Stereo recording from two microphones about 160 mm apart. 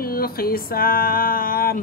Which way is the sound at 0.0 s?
65° left (ahead or behind).